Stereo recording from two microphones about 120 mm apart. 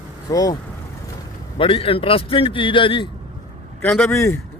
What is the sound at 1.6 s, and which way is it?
A man's voice, 50° left (ahead or behind).